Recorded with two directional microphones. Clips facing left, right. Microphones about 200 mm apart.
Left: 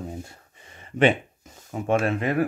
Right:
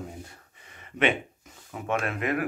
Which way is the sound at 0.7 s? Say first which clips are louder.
Left 5 dB; 30° left (ahead or behind).